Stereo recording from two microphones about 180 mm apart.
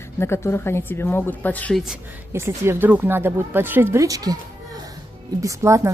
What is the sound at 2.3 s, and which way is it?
Speech, 15° right (ahead or behind).